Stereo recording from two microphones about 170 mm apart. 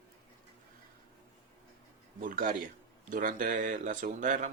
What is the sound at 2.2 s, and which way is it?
Speech, 50° right (ahead or behind).